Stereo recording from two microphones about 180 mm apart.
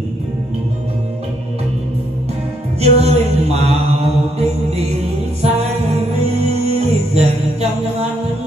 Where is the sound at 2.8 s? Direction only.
35° right (ahead or behind).